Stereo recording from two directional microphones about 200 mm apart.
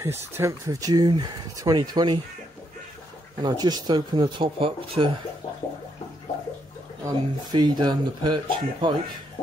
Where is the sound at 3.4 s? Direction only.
20° right (ahead or behind).